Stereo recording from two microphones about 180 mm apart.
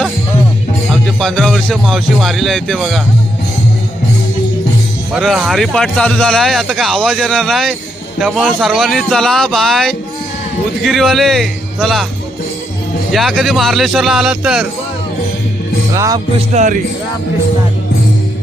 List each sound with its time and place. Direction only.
0.9 s speech: centre (ahead or behind)
5.1 s speech: centre (ahead or behind)
13.1 s speech: centre (ahead or behind)
16.0 s music: 20° right (ahead or behind)
16.5 s speech: 40° right (ahead or behind)